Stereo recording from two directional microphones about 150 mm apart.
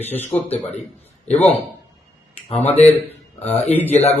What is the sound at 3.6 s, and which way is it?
Speech, 10° left (ahead or behind).